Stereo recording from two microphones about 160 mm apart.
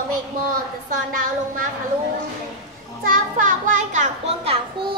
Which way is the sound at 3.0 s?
55° right (ahead or behind).